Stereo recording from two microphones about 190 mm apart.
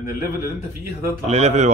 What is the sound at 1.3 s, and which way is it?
Speech, 35° right (ahead or behind).